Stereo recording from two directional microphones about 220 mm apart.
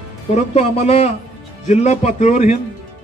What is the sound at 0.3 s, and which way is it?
A man's voice, 30° left (ahead or behind).